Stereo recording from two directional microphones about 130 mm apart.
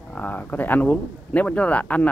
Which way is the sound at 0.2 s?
15° left (ahead or behind).